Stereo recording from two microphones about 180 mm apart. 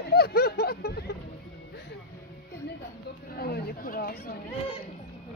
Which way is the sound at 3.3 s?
60° left (ahead or behind).